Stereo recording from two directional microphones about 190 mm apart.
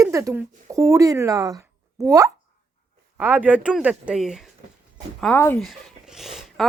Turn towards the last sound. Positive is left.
turn(degrees=0)  # may be behind; listen again after turning